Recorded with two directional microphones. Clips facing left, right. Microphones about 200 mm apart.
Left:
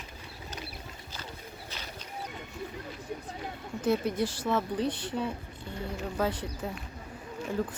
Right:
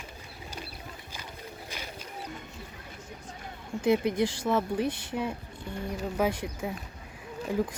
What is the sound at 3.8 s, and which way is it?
Speech, 15° right (ahead or behind).